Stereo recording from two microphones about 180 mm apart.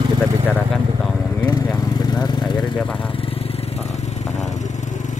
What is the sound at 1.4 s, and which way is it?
Vehicle, 20° left (ahead or behind).